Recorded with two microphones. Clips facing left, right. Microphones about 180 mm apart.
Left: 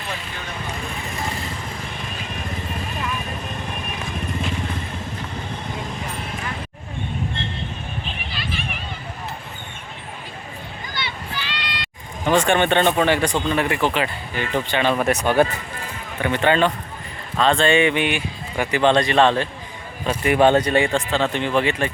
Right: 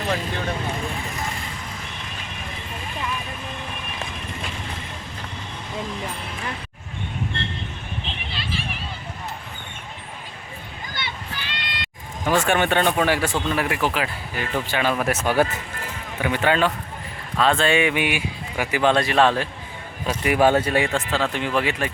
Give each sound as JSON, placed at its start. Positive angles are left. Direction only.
{"t": 8.3, "sound": "a sound", "side_deg": -30}
{"t": 10.9, "sound": "run", "side_deg": -50}
{"t": 12.2, "sound": "speech", "side_deg": -5}